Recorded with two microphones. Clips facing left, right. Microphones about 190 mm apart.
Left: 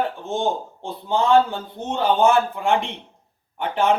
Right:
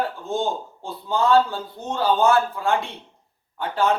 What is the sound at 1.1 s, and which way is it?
Speech, 20° left (ahead or behind).